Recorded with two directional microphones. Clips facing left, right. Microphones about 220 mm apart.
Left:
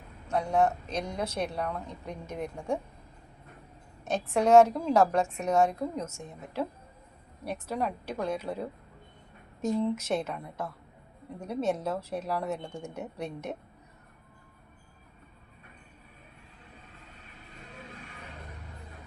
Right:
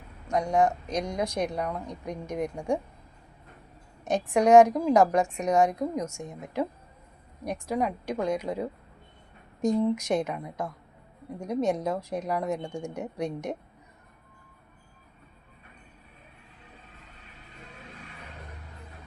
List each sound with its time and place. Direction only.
0.3 s a woman's voice: 15° right (ahead or behind)
4.0 s a woman's voice: 15° right (ahead or behind)